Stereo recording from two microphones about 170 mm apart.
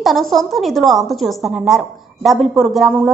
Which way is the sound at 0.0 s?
Centre (ahead or behind).